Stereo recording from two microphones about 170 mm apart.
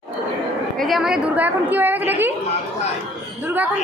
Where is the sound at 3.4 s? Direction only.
10° right (ahead or behind).